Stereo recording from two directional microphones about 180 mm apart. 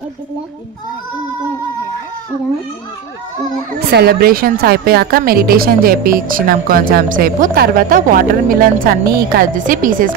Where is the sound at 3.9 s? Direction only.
60° right (ahead or behind).